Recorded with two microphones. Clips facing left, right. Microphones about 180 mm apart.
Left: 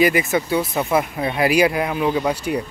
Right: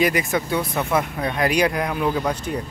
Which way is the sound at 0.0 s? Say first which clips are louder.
Left 3 dB; 5° left (ahead or behind).